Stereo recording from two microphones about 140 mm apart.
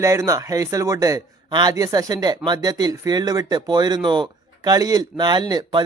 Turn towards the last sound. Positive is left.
turn(degrees=-30)  # may be behind; listen again after turning